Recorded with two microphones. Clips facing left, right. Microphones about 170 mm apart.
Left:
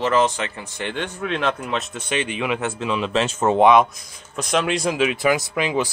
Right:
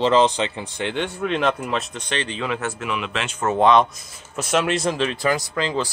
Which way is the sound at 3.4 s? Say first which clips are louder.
Left 1 dB; 15° left (ahead or behind).